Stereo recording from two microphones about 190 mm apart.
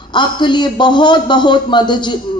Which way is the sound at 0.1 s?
25° left (ahead or behind).